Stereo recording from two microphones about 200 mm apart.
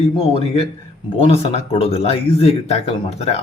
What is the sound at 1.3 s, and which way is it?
Speech, 30° left (ahead or behind).